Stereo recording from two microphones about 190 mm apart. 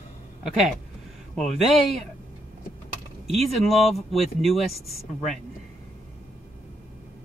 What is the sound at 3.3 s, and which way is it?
Speech, 35° right (ahead or behind).